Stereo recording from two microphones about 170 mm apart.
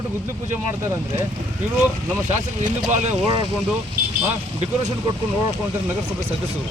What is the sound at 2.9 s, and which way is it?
Speech, 40° right (ahead or behind).